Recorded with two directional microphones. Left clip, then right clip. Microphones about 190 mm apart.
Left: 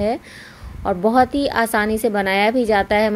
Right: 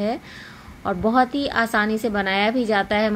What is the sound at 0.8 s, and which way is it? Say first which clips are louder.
A woman's voice: left 3 dB; 30° left (ahead or behind).